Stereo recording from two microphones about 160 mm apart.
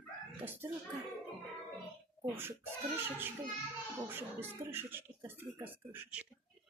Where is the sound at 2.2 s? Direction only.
15° right (ahead or behind).